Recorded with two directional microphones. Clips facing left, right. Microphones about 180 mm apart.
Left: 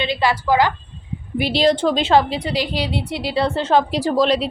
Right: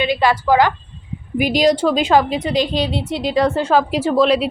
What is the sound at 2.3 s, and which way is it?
A woman's voice, 20° right (ahead or behind).